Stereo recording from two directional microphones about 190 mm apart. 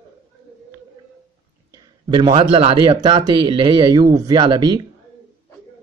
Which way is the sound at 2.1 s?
25° right (ahead or behind).